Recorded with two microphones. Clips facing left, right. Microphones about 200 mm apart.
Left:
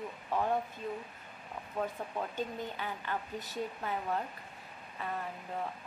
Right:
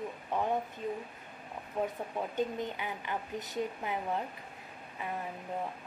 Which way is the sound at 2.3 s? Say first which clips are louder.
Right 4 dB; 15° right (ahead or behind).